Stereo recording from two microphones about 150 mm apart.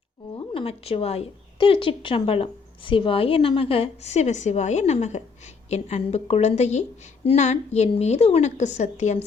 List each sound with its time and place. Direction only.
0.3 s a woman's voice: 40° left (ahead or behind)